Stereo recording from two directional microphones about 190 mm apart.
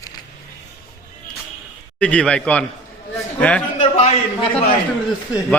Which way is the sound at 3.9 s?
35° left (ahead or behind).